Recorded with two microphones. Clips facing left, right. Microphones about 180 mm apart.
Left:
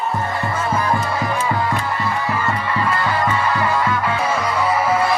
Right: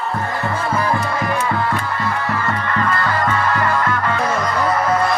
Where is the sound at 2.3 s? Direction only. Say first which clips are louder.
Even; 10° left (ahead or behind).